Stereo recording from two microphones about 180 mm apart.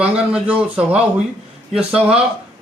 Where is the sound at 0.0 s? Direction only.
5° right (ahead or behind).